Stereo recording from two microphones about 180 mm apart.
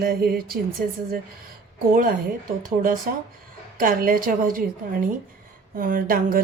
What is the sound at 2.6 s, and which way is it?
A woman's voice, 50° right (ahead or behind).